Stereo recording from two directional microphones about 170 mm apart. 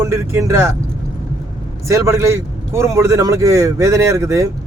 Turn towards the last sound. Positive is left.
turn(degrees=-20)  # may be behind; listen again after turning